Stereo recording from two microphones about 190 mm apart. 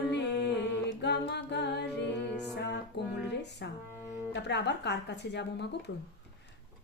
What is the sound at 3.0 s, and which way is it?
Music, 65° left (ahead or behind).